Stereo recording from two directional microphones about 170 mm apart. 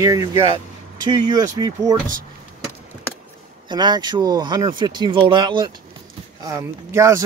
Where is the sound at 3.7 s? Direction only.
25° right (ahead or behind).